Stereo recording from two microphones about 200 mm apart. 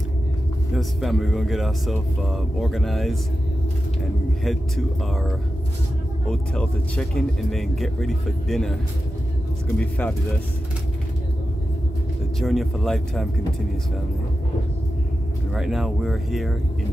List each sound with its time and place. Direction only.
0.7 s speech: centre (ahead or behind)
9.8 s speech: 10° left (ahead or behind)
12.4 s speech: centre (ahead or behind)
15.5 s speech: centre (ahead or behind)